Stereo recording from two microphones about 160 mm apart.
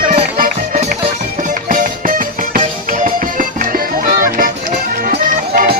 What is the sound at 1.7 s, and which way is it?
Music, 60° right (ahead or behind).